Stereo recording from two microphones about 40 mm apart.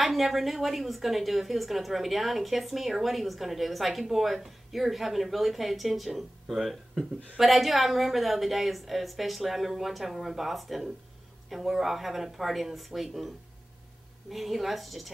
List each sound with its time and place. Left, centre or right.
0.0 s a woman's voice: centre
14.3 s a woman's voice: centre